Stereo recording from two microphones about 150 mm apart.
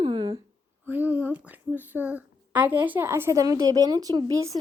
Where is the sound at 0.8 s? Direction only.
10° right (ahead or behind).